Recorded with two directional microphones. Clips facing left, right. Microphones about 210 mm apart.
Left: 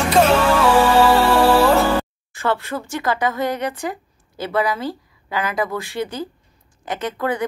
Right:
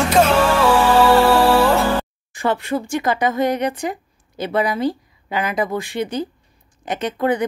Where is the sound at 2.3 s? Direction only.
15° right (ahead or behind).